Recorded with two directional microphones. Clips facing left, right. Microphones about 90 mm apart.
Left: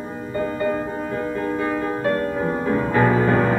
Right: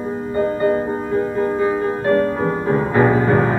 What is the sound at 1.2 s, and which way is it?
Music, 25° right (ahead or behind).